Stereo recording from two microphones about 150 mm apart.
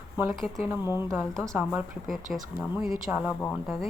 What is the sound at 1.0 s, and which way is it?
Speech, 15° right (ahead or behind).